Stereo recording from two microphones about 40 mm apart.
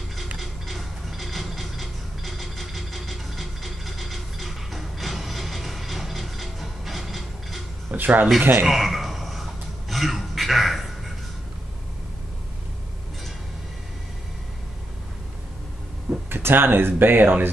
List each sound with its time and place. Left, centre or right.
0.4 s mechanisms: centre
7.9 s speech: right
8.6 s a sound: centre
16.3 s speech: right